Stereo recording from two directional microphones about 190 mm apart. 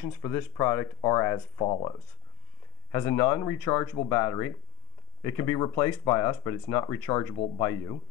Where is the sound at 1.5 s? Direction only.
25° left (ahead or behind).